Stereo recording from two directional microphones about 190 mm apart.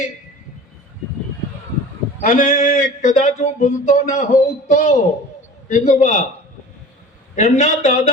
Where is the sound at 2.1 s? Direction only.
45° left (ahead or behind).